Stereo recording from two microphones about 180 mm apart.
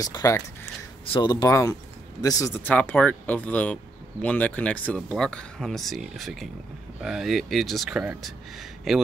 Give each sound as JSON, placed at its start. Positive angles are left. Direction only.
{"t": 0.0, "sound": "speech", "side_deg": 20}